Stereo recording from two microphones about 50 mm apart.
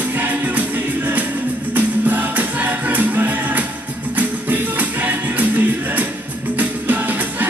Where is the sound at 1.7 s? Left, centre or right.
Right.